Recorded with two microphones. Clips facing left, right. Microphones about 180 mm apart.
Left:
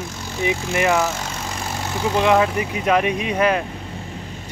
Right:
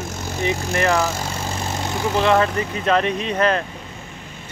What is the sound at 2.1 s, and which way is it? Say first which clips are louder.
Speech: left 1 dB; 10° left (ahead or behind).